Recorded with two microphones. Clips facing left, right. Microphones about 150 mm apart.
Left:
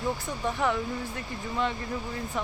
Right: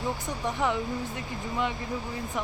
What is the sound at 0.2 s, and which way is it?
Speech, 20° right (ahead or behind).